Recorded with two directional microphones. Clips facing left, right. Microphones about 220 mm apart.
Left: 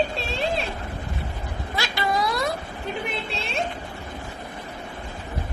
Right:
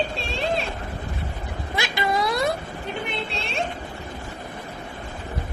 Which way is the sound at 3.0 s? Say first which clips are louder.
Even; centre (ahead or behind).